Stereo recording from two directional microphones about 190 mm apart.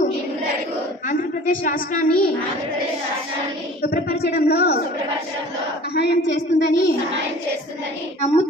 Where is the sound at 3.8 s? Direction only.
55° left (ahead or behind).